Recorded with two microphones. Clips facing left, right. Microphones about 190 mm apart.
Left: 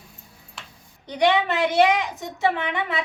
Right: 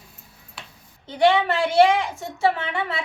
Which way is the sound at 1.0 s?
15° left (ahead or behind).